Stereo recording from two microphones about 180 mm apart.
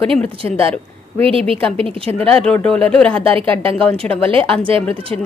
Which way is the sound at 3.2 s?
30° right (ahead or behind).